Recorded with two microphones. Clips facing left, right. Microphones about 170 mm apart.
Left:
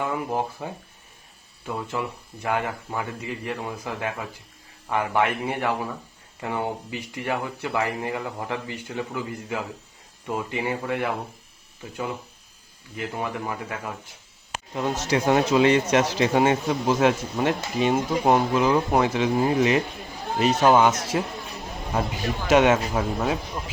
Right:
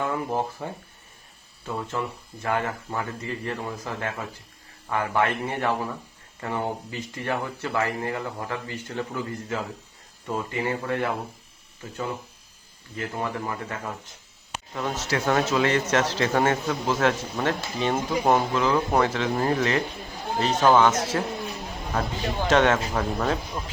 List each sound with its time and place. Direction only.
0.0 s speech: 15° left (ahead or behind)
13.0 s speech: 15° left (ahead or behind)
14.9 s speech: 15° left (ahead or behind)